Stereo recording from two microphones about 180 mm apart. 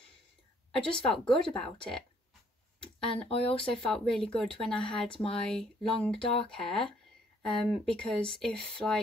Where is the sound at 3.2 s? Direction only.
30° left (ahead or behind).